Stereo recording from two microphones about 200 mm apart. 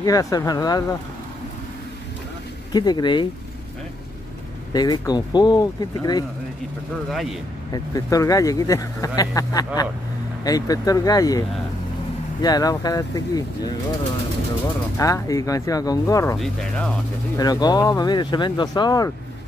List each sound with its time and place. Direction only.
0.0 s speech: 20° left (ahead or behind)
2.7 s speech: 20° left (ahead or behind)
4.7 s speech: 20° left (ahead or behind)
7.1 s speech: centre (ahead or behind)
7.7 s speech: 15° left (ahead or behind)
15.0 s speech: 15° left (ahead or behind)
16.3 s speech: 5° left (ahead or behind)
17.4 s speech: 20° left (ahead or behind)